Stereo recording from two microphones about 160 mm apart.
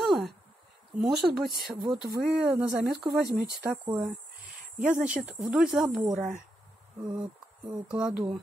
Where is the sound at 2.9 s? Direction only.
Centre (ahead or behind).